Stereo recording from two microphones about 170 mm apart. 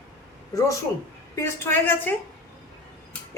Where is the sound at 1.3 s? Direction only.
15° left (ahead or behind).